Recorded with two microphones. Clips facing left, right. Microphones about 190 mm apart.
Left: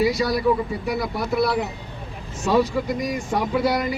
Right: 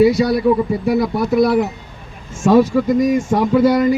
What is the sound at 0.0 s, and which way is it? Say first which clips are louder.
A man's voice: right 7 dB; 55° right (ahead or behind).